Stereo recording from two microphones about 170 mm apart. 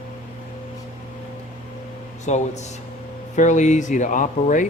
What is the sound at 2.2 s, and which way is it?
Speech, 45° left (ahead or behind).